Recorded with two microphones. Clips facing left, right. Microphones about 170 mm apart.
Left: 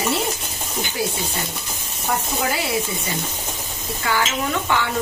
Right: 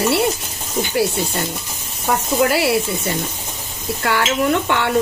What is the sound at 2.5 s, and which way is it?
Speech, 70° right (ahead or behind).